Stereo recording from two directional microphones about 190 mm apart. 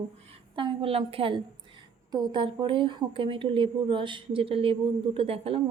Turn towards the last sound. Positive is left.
turn(degrees=-30)  # may be behind; listen again after turning